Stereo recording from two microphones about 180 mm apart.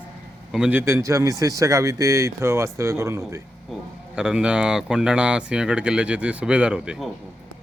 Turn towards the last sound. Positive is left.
turn(degrees=-5)  # may be behind; listen again after turning